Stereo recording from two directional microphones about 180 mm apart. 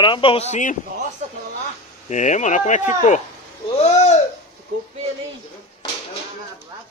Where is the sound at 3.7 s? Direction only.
35° left (ahead or behind).